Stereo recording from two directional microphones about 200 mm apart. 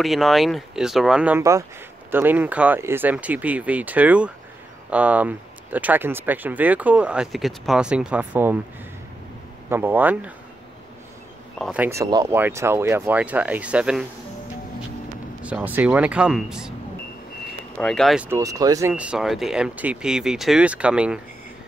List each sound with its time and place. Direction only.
0.0 s speech: centre (ahead or behind)
9.7 s speech: 10° right (ahead or behind)
11.5 s speech: centre (ahead or behind)
11.8 s speech: 15° right (ahead or behind)
15.4 s speech: 10° right (ahead or behind)
17.7 s speech: 5° left (ahead or behind)
18.3 s speech: 15° right (ahead or behind)